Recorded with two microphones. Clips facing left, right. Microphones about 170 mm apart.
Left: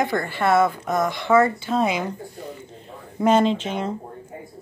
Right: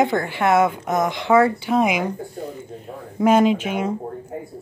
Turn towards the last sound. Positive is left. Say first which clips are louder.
# right 3 dB
turn(degrees=-10)  # may be behind; listen again after turning